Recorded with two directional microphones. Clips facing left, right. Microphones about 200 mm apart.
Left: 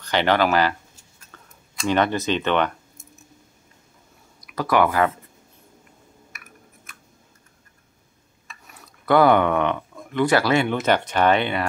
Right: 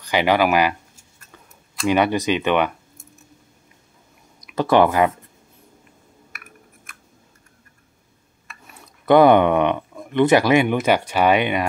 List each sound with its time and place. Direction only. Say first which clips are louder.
0.0 s speech: right 2 dB; 10° right (ahead or behind)
1.3 s a sound: right 2 dB; 10° right (ahead or behind)
1.9 s speech: right 3 dB; 10° right (ahead or behind)
4.4 s speech: right 4 dB; 25° right (ahead or behind)
8.8 s speech: right 4 dB; 20° right (ahead or behind)